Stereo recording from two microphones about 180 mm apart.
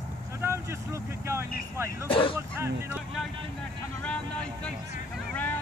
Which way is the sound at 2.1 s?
30° left (ahead or behind).